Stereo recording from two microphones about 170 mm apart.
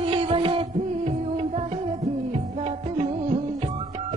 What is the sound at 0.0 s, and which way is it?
Music, 30° right (ahead or behind).